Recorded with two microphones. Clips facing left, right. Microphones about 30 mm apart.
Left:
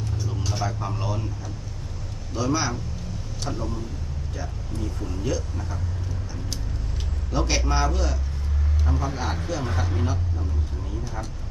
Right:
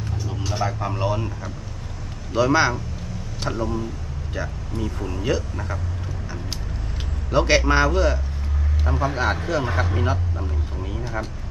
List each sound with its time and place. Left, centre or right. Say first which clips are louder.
0.3 s speech: right 4 dB; centre
1.2 s speech: right 3 dB; right
7.3 s speech: right 8 dB; right